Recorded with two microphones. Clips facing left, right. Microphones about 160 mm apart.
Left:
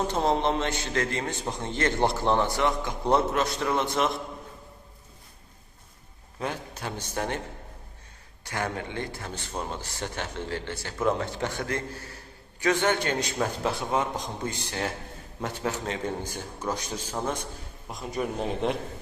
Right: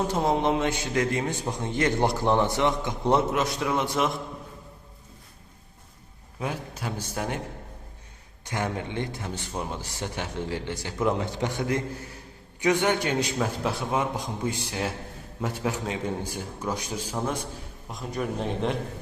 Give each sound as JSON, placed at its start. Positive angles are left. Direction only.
{"t": 0.1, "sound": "a man's voice", "side_deg": -5}
{"t": 3.3, "sound": "a man's voice", "side_deg": -10}
{"t": 6.4, "sound": "a man's voice", "side_deg": -5}
{"t": 8.4, "sound": "a man's voice", "side_deg": -20}
{"t": 17.8, "sound": "speech", "side_deg": 0}